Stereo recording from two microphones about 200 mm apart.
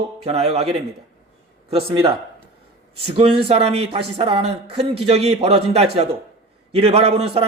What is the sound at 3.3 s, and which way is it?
A man's voice, 30° right (ahead or behind).